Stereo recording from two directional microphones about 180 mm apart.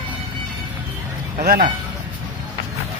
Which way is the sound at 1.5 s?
55° right (ahead or behind).